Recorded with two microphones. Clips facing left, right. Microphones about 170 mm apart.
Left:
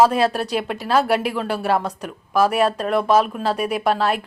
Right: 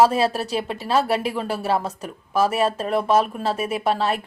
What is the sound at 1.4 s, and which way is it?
Speech, 5° right (ahead or behind).